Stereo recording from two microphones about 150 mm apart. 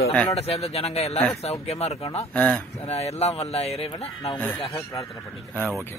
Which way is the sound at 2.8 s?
45° left (ahead or behind).